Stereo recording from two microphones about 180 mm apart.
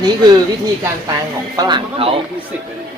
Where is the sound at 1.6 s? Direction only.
25° right (ahead or behind).